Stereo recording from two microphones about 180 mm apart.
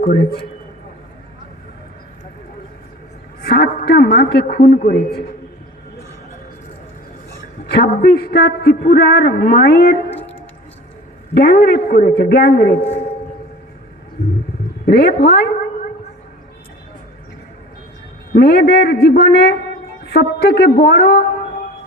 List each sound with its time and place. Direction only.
3.4 s a man's voice: 60° left (ahead or behind)
7.7 s a man's voice: 60° left (ahead or behind)
11.3 s a man's voice: 60° left (ahead or behind)
14.8 s a man's voice: 60° left (ahead or behind)
18.3 s a man's voice: 60° left (ahead or behind)